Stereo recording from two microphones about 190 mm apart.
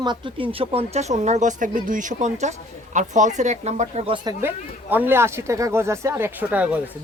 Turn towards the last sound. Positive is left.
turn(degrees=-10)  # may be behind; listen again after turning